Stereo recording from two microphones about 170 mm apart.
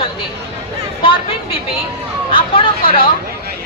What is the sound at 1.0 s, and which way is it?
A woman's voice, 30° left (ahead or behind).